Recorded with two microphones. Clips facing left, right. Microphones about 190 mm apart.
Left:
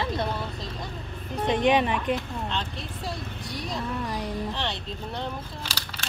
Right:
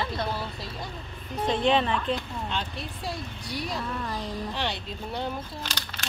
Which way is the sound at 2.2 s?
Centre (ahead or behind).